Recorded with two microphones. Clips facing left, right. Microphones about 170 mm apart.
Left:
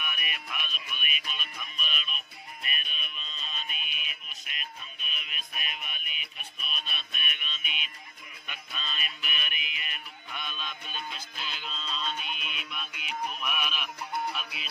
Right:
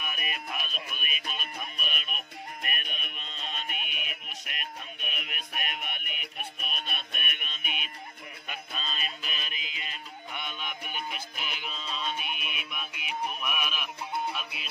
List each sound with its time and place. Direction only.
0.0 s music: 35° right (ahead or behind)
8.4 s music: 35° right (ahead or behind); by 14.7 s centre (ahead or behind)